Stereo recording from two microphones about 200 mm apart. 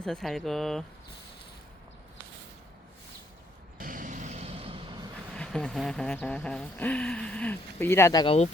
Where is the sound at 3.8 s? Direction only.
40° right (ahead or behind); by 5.0 s 25° right (ahead or behind).